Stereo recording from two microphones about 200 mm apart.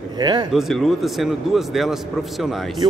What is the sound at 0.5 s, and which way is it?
A man's voice, centre (ahead or behind).